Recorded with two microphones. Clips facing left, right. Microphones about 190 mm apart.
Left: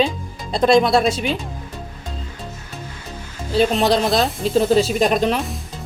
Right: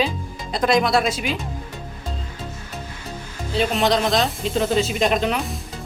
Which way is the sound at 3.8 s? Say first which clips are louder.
Left 2 dB; 35° left (ahead or behind).